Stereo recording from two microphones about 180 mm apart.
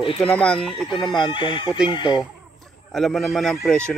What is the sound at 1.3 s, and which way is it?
Speech, 25° left (ahead or behind).